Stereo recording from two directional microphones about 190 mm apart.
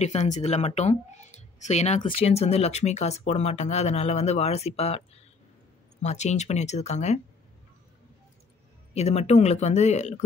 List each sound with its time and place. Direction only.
0.0 s speech: 40° left (ahead or behind)
6.0 s speech: 35° left (ahead or behind)
8.9 s speech: 35° left (ahead or behind)